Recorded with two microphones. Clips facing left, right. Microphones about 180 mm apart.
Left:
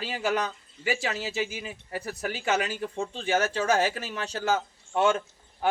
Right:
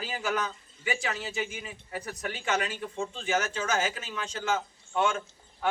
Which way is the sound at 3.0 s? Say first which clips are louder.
Left 3 dB; 35° left (ahead or behind).